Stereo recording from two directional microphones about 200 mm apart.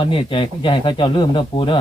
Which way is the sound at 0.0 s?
25° left (ahead or behind).